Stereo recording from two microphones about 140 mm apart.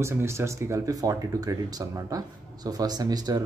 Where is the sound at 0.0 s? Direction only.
20° right (ahead or behind).